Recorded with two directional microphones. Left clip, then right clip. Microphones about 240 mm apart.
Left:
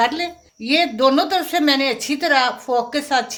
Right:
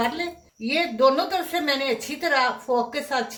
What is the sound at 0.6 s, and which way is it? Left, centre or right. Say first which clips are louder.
A woman's voice: left 4 dB; left.